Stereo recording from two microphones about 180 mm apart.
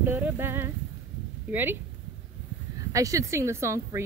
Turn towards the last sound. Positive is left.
turn(degrees=-15)  # may be behind; listen again after turning